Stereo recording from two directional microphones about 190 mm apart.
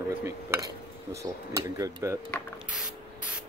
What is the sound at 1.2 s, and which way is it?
Speech, 20° right (ahead or behind).